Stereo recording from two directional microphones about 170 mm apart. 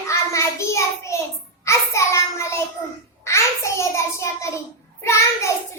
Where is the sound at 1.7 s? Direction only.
15° left (ahead or behind).